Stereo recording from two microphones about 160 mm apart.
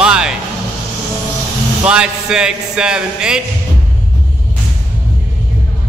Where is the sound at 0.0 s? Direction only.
5° right (ahead or behind).